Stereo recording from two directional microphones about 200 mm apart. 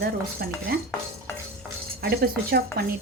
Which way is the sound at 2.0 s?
55° right (ahead or behind).